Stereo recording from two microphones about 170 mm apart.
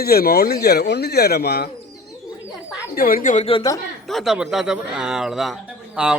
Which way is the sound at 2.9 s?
55° left (ahead or behind).